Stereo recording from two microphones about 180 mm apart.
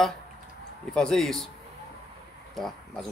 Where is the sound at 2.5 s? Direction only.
Centre (ahead or behind).